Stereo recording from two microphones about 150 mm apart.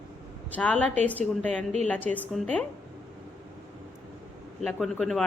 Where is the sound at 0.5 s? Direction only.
10° left (ahead or behind).